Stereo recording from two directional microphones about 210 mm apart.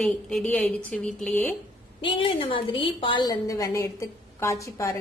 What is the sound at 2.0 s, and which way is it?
A woman's voice, 25° left (ahead or behind).